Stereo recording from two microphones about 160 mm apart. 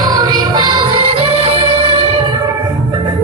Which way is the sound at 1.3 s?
40° right (ahead or behind).